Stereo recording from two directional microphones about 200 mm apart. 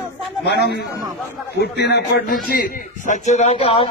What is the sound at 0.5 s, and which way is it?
A man's voice, 55° left (ahead or behind).